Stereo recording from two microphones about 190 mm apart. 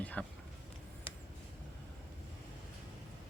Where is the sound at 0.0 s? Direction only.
5° left (ahead or behind).